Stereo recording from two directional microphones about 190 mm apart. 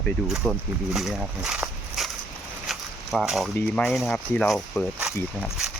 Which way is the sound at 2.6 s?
Centre (ahead or behind).